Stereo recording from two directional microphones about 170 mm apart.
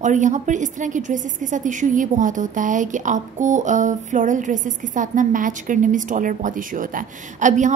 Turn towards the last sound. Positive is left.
turn(degrees=-45)  # may be behind; listen again after turning